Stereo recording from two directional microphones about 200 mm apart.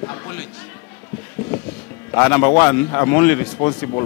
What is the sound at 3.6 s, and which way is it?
Speech, 25° left (ahead or behind).